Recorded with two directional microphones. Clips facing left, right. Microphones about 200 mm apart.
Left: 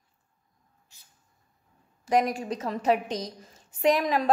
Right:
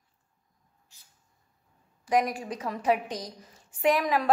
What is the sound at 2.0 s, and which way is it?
A woman's voice, 25° left (ahead or behind).